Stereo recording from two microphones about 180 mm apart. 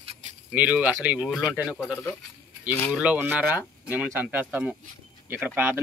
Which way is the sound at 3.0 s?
10° right (ahead or behind).